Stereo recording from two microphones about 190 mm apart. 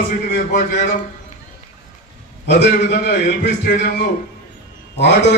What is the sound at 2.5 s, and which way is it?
A man's voice, 55° left (ahead or behind).